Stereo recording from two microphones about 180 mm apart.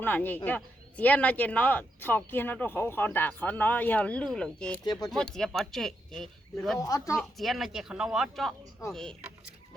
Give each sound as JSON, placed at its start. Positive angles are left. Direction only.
{"t": 0.0, "sound": "speech", "side_deg": 10}
{"t": 4.8, "sound": "speech", "side_deg": 20}
{"t": 5.0, "sound": "speech", "side_deg": 5}
{"t": 6.7, "sound": "speech", "side_deg": 20}
{"t": 7.2, "sound": "speech", "side_deg": 0}